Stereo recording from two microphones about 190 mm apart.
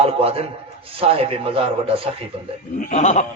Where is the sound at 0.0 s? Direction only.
30° right (ahead or behind).